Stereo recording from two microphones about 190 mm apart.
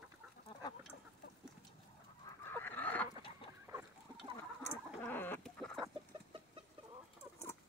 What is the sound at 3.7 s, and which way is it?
Chicken, 10° right (ahead or behind).